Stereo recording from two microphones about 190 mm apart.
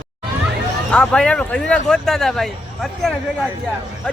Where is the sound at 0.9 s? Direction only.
5° left (ahead or behind).